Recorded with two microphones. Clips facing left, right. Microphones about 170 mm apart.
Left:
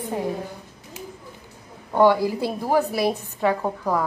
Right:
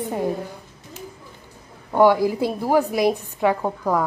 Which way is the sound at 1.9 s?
10° right (ahead or behind).